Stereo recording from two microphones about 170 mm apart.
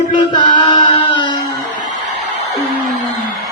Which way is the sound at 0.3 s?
25° left (ahead or behind).